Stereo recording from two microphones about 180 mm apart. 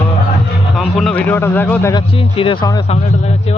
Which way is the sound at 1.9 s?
30° left (ahead or behind).